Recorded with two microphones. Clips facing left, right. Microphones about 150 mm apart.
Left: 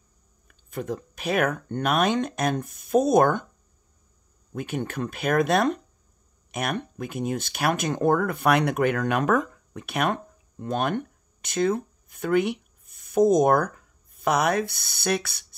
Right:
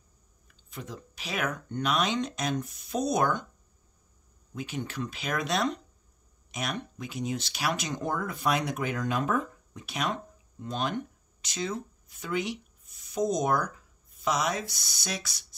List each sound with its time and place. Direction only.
0.5 s speech: 50° left (ahead or behind)
4.6 s speech: 55° left (ahead or behind)